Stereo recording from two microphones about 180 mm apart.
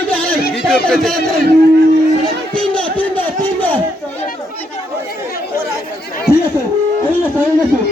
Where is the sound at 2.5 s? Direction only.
5° left (ahead or behind).